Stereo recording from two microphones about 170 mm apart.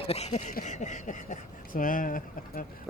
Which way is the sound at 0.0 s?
35° left (ahead or behind).